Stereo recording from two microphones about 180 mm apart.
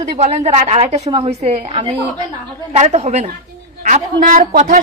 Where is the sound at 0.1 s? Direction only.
35° right (ahead or behind).